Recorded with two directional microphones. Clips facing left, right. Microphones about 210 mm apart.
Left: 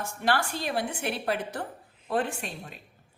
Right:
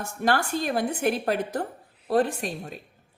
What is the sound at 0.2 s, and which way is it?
A woman's voice, 45° right (ahead or behind).